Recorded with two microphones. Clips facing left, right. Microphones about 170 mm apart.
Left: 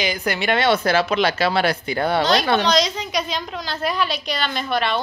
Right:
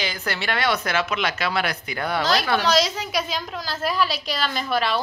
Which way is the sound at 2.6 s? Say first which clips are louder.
Left 1 dB; 5° right (ahead or behind).